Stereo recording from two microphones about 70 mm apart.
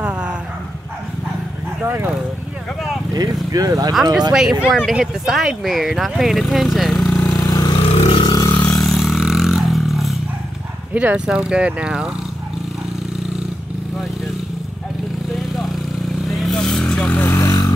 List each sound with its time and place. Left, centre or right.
0.0 s dog: centre
3.5 s speech: right
3.9 s speech: centre
7.1 s vehicle: centre
7.3 s vehicle: left
8.3 s a sound: left
8.8 s a sound: centre
10.9 s speech: centre
15.3 s vehicle: centre
17.3 s vehicle: left